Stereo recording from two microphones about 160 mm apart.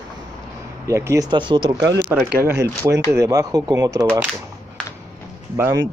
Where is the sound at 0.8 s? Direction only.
20° right (ahead or behind).